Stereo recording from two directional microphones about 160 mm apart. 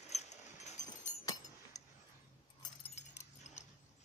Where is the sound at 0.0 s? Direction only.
45° left (ahead or behind).